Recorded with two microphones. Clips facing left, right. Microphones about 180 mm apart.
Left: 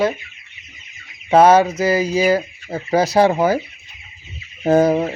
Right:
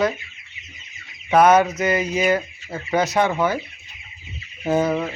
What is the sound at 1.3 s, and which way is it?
Speech, 30° left (ahead or behind).